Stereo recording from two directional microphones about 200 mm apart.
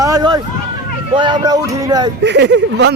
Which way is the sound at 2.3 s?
60° right (ahead or behind).